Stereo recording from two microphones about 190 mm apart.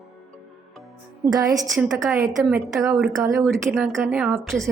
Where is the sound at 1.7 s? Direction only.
Centre (ahead or behind).